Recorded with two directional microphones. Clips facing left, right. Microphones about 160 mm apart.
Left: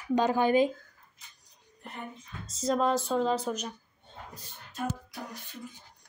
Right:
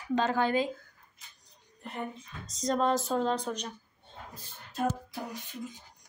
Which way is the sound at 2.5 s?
5° left (ahead or behind).